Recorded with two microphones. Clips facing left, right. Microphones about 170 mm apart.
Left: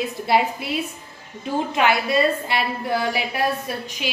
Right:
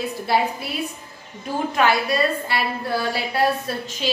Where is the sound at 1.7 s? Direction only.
20° left (ahead or behind).